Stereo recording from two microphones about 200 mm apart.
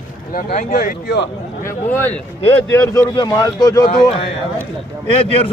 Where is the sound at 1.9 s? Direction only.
10° left (ahead or behind).